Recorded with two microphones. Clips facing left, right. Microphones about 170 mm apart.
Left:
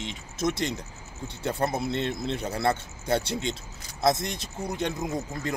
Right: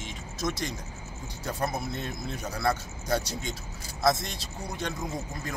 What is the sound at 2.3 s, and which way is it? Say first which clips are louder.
Speech: even; 25° left (ahead or behind).